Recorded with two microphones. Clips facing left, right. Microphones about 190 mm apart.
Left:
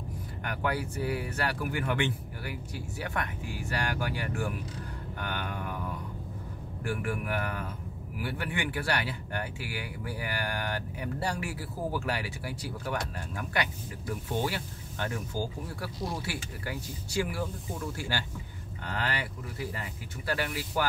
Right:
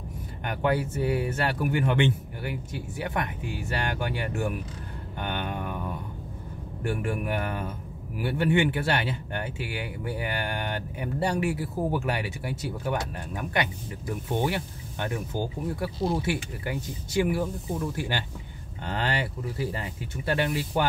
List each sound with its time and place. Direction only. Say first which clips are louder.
0.4 s speech: right 6 dB; 25° right (ahead or behind)
6.8 s speech: right 4 dB; 25° right (ahead or behind)